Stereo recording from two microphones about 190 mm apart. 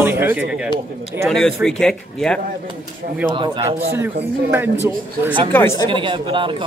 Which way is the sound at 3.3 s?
25° right (ahead or behind).